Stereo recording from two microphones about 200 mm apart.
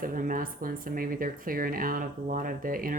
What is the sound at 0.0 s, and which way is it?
Speech, 45° right (ahead or behind).